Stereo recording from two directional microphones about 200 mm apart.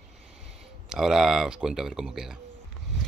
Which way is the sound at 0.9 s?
5° right (ahead or behind).